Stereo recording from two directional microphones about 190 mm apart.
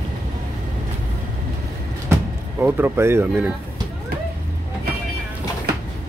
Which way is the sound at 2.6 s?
10° right (ahead or behind).